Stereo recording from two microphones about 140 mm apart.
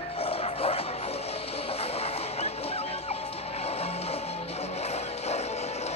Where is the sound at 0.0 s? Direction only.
45° left (ahead or behind).